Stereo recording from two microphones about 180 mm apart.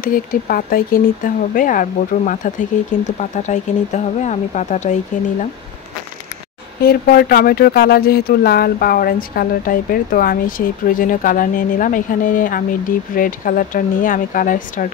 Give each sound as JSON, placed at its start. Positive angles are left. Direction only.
{"t": 0.0, "sound": "speech", "side_deg": 50}
{"t": 6.8, "sound": "speech", "side_deg": 60}